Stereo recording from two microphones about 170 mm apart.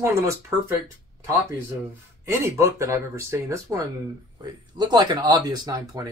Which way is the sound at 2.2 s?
15° right (ahead or behind).